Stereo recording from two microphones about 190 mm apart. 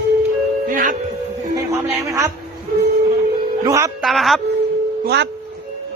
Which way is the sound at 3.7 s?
15° right (ahead or behind).